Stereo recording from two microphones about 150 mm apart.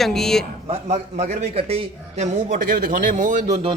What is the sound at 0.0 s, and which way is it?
Speech, centre (ahead or behind).